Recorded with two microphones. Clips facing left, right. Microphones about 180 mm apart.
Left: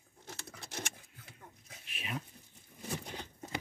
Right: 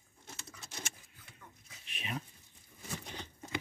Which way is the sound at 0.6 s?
60° left (ahead or behind).